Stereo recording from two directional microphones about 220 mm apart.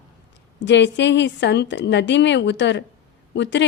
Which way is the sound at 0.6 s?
55° left (ahead or behind).